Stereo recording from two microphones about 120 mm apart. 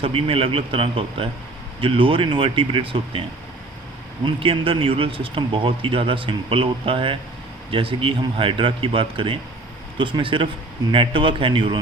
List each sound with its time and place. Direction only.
0.0 s speech: 50° right (ahead or behind)
4.4 s speech: 50° right (ahead or behind)